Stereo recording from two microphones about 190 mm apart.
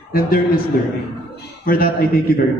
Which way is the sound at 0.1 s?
50° left (ahead or behind).